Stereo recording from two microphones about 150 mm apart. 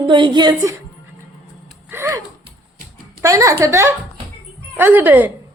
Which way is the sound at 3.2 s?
20° right (ahead or behind).